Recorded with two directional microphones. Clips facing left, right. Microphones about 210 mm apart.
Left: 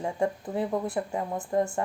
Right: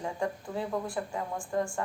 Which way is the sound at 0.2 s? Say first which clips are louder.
Left 7 dB; 20° left (ahead or behind).